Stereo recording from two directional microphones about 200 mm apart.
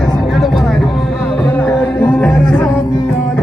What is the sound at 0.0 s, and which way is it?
Music, centre (ahead or behind).